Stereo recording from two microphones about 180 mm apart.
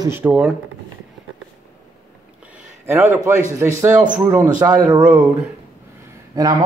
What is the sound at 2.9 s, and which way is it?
A man's voice, 15° right (ahead or behind).